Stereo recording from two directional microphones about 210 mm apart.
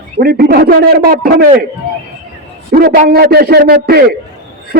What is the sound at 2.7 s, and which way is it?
A man's voice, 45° right (ahead or behind).